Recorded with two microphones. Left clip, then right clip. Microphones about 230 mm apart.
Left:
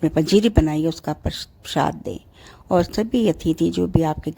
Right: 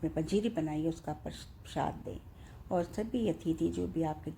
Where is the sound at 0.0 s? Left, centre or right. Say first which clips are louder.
Left 15 dB; left.